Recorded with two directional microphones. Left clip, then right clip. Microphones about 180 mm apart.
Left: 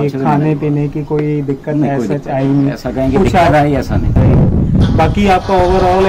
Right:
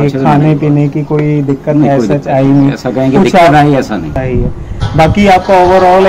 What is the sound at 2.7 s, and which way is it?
Speech, 10° left (ahead or behind).